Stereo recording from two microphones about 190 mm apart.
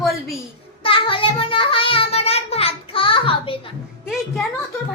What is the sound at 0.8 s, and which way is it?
Child singing, 30° left (ahead or behind).